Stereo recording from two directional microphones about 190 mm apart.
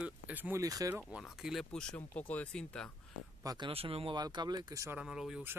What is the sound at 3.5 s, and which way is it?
Speech, 25° right (ahead or behind).